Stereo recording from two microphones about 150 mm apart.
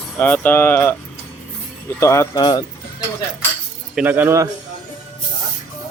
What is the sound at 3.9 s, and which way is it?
Speech, 10° right (ahead or behind).